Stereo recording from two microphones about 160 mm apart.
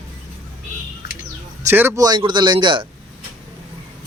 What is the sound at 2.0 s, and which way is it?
Speech, 25° right (ahead or behind).